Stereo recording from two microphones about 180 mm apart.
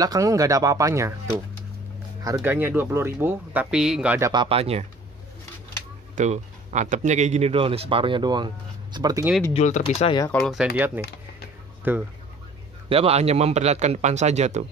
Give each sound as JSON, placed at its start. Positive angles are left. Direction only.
{"t": 0.0, "sound": "speech", "side_deg": -20}
{"t": 4.3, "sound": "speech", "side_deg": -30}
{"t": 6.1, "sound": "speech", "side_deg": -40}
{"t": 9.5, "sound": "speech", "side_deg": 40}
{"t": 10.4, "sound": "speech", "side_deg": 0}
{"t": 12.9, "sound": "speech", "side_deg": -35}